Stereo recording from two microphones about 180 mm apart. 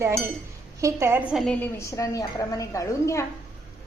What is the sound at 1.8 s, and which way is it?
A woman's voice, 15° left (ahead or behind).